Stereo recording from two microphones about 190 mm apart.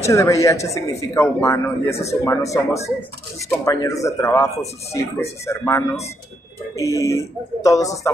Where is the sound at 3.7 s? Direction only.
15° left (ahead or behind).